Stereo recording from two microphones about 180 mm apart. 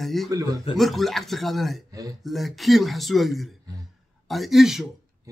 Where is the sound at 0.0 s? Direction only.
Centre (ahead or behind).